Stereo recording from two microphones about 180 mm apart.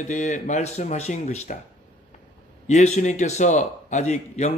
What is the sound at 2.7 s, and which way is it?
Speech, 40° left (ahead or behind).